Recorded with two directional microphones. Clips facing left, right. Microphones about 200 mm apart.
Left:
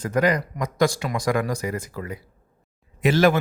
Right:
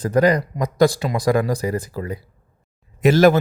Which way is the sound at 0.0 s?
35° right (ahead or behind).